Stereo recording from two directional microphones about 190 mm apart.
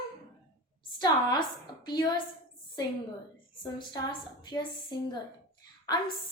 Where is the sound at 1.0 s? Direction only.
25° left (ahead or behind).